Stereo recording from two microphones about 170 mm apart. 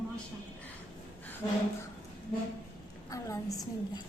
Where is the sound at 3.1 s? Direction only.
20° left (ahead or behind).